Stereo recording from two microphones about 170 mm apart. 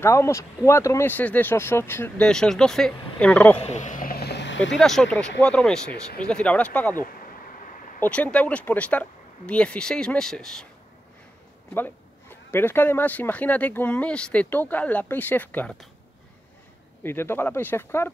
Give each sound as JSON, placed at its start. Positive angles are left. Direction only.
{"t": 0.0, "sound": "a man's voice", "side_deg": 15}
{"t": 3.6, "sound": "vehicle", "side_deg": 45}
{"t": 4.7, "sound": "a man's voice", "side_deg": 0}
{"t": 8.0, "sound": "a man's voice", "side_deg": 5}
{"t": 11.7, "sound": "a man's voice", "side_deg": 10}
{"t": 17.0, "sound": "a man's voice", "side_deg": 15}